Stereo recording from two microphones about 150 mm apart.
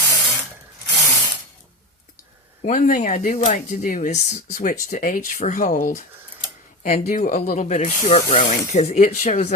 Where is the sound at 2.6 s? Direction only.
55° left (ahead or behind).